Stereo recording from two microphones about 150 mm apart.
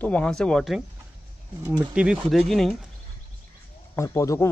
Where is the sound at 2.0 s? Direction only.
5° right (ahead or behind).